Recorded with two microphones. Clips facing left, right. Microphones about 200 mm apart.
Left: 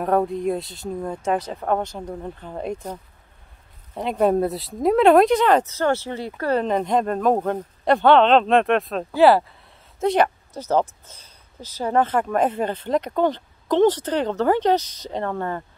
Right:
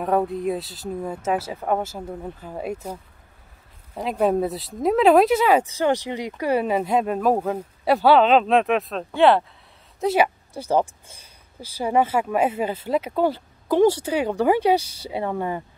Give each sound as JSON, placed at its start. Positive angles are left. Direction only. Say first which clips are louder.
{"t": 0.0, "sound": "speech", "louder": "left 1 dB", "side_deg": 0}